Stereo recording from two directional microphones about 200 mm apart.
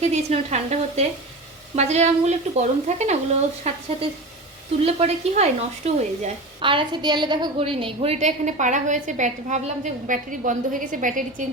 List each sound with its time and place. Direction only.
0.0 s speech: 35° right (ahead or behind)